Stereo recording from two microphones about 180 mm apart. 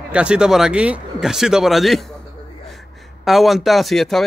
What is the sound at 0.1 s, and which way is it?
Speech, 5° right (ahead or behind).